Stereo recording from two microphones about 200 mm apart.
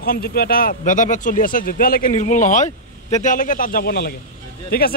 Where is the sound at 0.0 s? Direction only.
50° left (ahead or behind).